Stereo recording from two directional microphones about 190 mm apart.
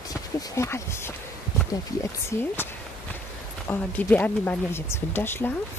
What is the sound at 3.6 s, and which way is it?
Speech, 10° left (ahead or behind).